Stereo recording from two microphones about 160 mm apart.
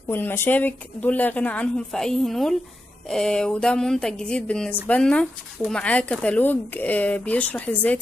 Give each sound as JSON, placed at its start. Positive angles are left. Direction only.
{"t": 0.1, "sound": "speech", "side_deg": 15}